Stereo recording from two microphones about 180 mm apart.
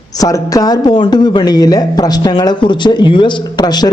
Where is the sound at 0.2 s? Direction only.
20° left (ahead or behind).